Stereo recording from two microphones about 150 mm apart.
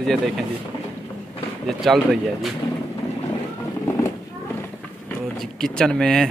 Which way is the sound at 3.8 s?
20° left (ahead or behind).